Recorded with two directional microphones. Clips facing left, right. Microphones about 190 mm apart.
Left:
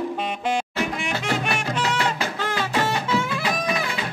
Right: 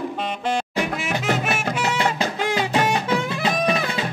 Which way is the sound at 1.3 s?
5° right (ahead or behind).